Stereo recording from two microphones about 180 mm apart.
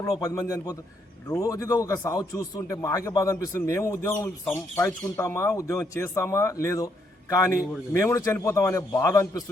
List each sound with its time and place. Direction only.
0.0 s a man's voice: 20° left (ahead or behind)